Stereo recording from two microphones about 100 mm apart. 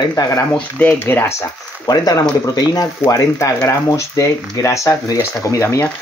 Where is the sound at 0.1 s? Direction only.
30° left (ahead or behind).